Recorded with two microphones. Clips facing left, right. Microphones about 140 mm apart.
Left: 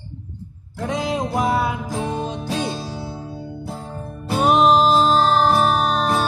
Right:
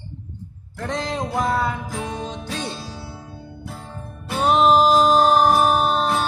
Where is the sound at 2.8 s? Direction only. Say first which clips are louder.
Left 5 dB; 40° left (ahead or behind).